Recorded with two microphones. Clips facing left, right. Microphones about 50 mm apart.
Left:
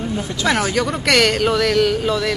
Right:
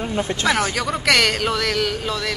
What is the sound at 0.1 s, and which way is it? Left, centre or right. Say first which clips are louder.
Speech: right 1 dB; right.